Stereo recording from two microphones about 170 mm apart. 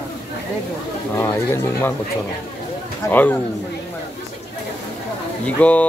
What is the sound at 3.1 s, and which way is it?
Speech, 10° left (ahead or behind).